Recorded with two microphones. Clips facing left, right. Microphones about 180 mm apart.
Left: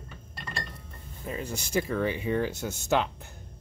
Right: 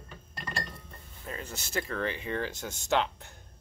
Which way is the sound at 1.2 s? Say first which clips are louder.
Left 6 dB; 10° left (ahead or behind).